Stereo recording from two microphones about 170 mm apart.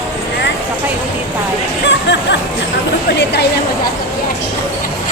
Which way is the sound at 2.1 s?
90° left.